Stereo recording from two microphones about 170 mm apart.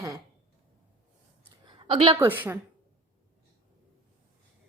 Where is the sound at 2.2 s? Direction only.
10° right (ahead or behind).